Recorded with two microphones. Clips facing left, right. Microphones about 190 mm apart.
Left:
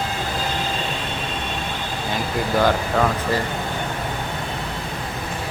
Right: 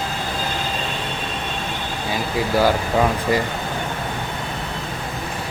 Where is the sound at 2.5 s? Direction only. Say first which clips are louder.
Right 1 dB; 10° right (ahead or behind).